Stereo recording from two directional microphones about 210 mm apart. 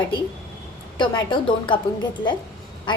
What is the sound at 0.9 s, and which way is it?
Speech, 20° left (ahead or behind).